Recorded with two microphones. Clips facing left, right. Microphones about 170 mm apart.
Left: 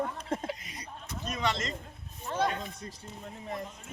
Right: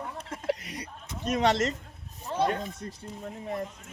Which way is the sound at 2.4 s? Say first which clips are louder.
Right 4 dB; 55° right (ahead or behind).